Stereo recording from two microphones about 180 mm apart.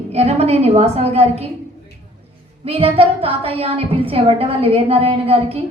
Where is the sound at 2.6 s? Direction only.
30° right (ahead or behind).